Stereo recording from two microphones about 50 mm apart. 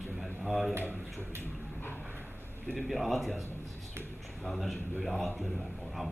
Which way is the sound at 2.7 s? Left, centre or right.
Centre.